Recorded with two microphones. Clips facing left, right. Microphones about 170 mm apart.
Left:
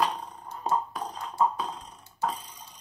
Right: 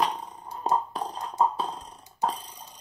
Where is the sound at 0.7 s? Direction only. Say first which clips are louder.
Right 2 dB; 35° right (ahead or behind).